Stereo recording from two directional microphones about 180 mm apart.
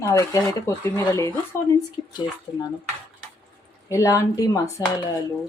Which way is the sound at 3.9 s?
15° left (ahead or behind).